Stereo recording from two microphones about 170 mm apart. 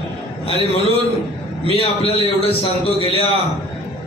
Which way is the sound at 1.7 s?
35° left (ahead or behind).